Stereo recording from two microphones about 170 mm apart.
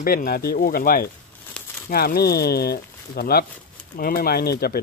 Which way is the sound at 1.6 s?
5° left (ahead or behind).